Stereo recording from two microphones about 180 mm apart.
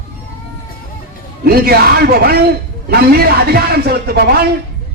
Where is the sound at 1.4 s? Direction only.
55° right (ahead or behind).